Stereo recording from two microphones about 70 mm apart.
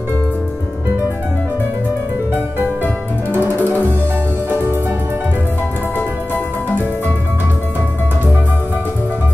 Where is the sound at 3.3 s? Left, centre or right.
Right.